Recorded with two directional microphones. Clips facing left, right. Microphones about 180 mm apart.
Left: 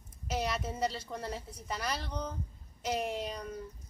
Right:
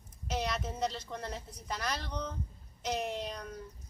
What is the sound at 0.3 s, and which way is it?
A woman's voice, 5° left (ahead or behind).